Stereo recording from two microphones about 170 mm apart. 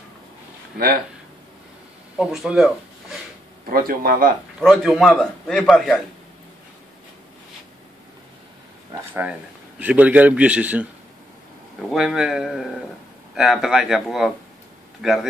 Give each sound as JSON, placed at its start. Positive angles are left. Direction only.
{"t": 2.1, "sound": "speech", "side_deg": 0}
{"t": 3.7, "sound": "speech", "side_deg": -60}
{"t": 4.6, "sound": "a man's voice", "side_deg": 0}
{"t": 9.8, "sound": "a man's voice", "side_deg": -10}